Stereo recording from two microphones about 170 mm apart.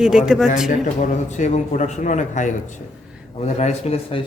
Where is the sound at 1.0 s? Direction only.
45° left (ahead or behind).